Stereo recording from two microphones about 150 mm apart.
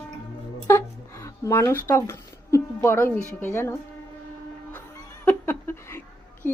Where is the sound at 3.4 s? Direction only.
15° left (ahead or behind).